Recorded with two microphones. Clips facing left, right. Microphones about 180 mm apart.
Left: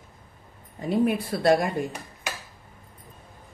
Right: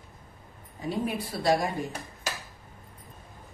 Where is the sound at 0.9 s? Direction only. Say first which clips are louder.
Left 8 dB; 55° left (ahead or behind).